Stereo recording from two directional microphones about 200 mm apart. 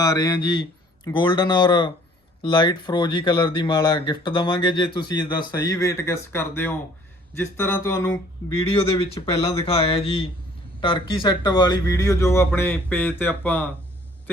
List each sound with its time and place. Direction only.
0.0 s speech: 20° left (ahead or behind)